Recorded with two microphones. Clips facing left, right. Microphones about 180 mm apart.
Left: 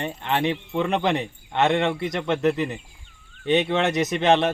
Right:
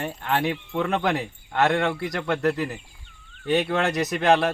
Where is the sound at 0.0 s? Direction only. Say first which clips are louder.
Left 1 dB; 20° left (ahead or behind).